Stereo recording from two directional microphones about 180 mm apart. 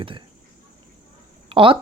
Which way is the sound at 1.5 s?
30° right (ahead or behind).